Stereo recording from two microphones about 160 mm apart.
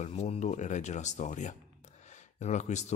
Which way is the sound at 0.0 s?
45° left (ahead or behind).